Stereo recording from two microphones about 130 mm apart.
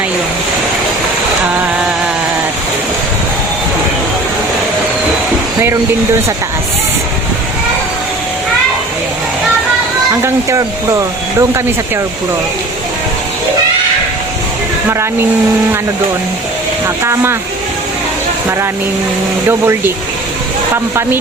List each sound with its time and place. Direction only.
10.2 s speech: 25° right (ahead or behind)
16.8 s speech: 20° right (ahead or behind)
19.5 s speech: 20° right (ahead or behind)